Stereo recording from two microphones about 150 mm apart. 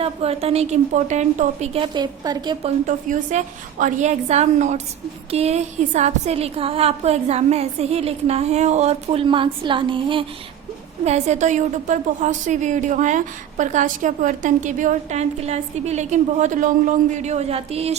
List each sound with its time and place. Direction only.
0.0 s a woman's voice: 40° right (ahead or behind)
1.8 s a woman's voice: 30° right (ahead or behind)
2.6 s a woman's voice: 55° right (ahead or behind); by 10.2 s 35° right (ahead or behind)
11.0 s a woman's voice: 50° right (ahead or behind)